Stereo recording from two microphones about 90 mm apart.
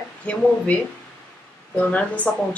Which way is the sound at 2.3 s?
5° left (ahead or behind).